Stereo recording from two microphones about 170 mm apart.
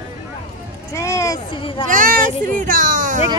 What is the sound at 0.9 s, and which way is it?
Speech, 15° left (ahead or behind).